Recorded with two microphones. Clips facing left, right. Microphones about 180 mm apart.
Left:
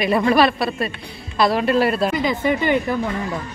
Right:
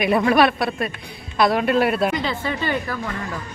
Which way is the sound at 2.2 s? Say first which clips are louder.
Left 5 dB; 15° left (ahead or behind).